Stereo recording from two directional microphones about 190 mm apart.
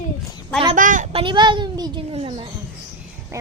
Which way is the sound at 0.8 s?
45° right (ahead or behind).